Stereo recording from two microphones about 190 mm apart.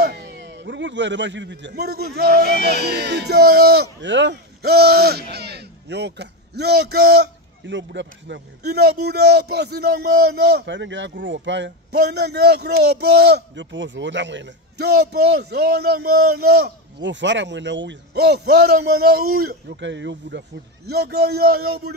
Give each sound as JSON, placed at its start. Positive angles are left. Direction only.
{"t": 0.0, "sound": "speech", "side_deg": -60}
{"t": 19.8, "sound": "speech", "side_deg": -70}